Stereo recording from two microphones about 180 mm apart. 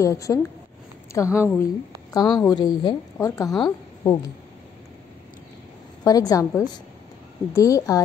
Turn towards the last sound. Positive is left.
turn(degrees=20)  # may be behind; listen again after turning